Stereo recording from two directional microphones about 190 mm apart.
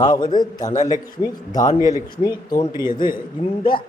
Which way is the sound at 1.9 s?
20° left (ahead or behind).